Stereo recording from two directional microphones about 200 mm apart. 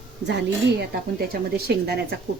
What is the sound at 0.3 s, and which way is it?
Speech, 55° right (ahead or behind).